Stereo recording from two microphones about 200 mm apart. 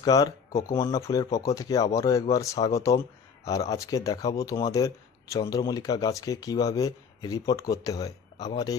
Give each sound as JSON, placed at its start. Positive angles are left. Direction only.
{"t": 0.0, "sound": "speech", "side_deg": 20}